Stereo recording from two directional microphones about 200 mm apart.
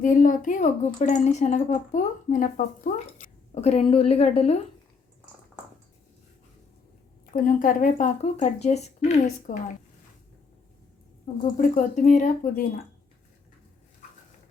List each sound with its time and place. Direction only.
0.0 s speech: 40° left (ahead or behind)
7.3 s speech: 40° left (ahead or behind)
11.5 s speech: 40° left (ahead or behind)